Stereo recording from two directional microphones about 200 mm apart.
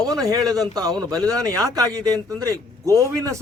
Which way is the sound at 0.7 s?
20° right (ahead or behind).